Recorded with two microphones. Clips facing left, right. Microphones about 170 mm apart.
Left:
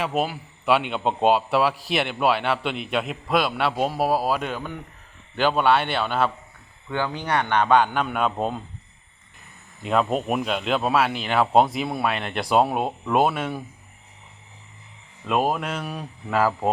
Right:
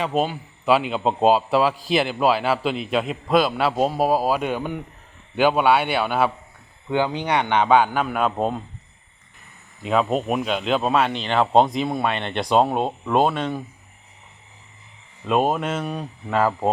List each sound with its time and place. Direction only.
0.2 s a man's voice: 5° left (ahead or behind)
9.8 s a man's voice: centre (ahead or behind)
15.3 s a man's voice: centre (ahead or behind)